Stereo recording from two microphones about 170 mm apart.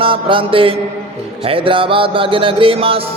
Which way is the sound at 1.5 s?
30° right (ahead or behind).